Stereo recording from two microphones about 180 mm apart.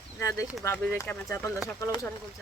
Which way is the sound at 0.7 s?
15° left (ahead or behind).